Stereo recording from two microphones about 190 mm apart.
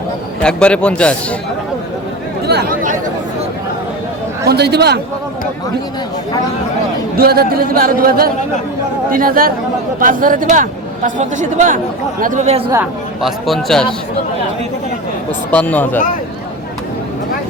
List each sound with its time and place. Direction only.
0.4 s a man's voice: 5° left (ahead or behind)
2.5 s speech: 60° right (ahead or behind)
4.4 s speech: 60° right (ahead or behind)
7.2 s speech: 55° right (ahead or behind); by 12.6 s 35° right (ahead or behind)
13.2 s a man's voice: centre (ahead or behind)
15.4 s speech: 10° left (ahead or behind)